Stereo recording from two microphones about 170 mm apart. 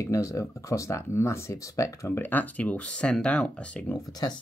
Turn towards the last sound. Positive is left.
turn(degrees=25)  # may be behind; listen again after turning